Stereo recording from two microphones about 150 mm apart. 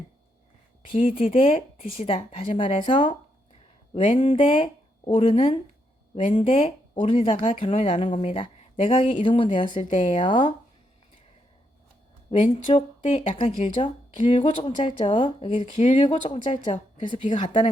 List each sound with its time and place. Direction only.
1.1 s speech: 35° left (ahead or behind); by 8.3 s 50° left (ahead or behind)
8.3 s speech: 35° left (ahead or behind)
12.5 s speech: 35° left (ahead or behind)
17.4 s speech: 55° left (ahead or behind)